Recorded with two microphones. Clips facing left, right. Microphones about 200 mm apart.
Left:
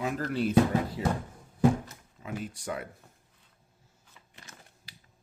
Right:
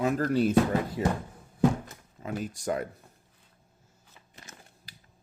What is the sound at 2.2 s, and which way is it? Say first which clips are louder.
Speech: right 4 dB; 40° right (ahead or behind).